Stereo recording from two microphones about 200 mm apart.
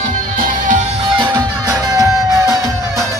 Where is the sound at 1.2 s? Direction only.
20° right (ahead or behind).